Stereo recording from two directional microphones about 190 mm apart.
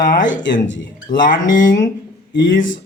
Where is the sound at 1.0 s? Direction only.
45° left (ahead or behind).